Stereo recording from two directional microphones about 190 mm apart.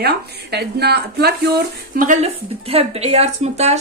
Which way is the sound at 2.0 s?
40° right (ahead or behind).